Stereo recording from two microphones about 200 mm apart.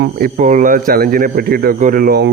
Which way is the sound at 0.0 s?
40° right (ahead or behind).